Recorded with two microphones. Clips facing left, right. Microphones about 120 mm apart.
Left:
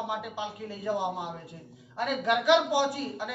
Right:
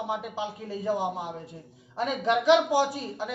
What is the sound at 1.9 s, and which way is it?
Speech, 30° right (ahead or behind).